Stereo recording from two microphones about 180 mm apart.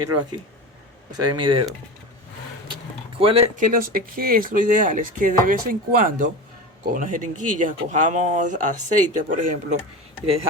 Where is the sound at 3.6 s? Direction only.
50° right (ahead or behind).